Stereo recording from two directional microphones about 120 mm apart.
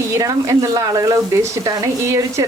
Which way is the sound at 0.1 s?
30° right (ahead or behind).